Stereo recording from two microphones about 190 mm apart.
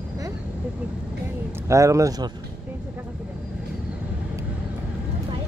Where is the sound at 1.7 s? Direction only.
15° right (ahead or behind).